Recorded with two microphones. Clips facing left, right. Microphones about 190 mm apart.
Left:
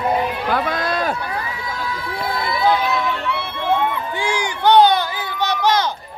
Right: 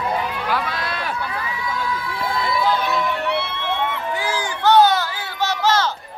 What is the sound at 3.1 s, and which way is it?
Music, 60° right (ahead or behind).